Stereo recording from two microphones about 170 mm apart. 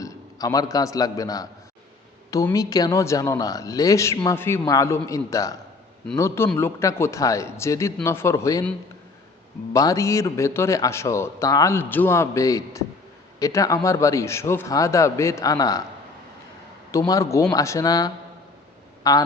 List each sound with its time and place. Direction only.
0.0 s a man's voice: 20° left (ahead or behind)
9.7 s a man's voice: 20° left (ahead or behind)
16.9 s a man's voice: 20° left (ahead or behind)